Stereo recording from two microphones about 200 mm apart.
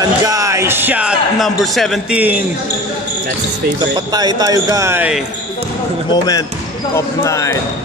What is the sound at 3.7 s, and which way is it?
Speech, 20° right (ahead or behind).